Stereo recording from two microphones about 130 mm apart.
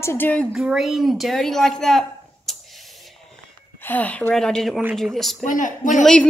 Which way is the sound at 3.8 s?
15° left (ahead or behind).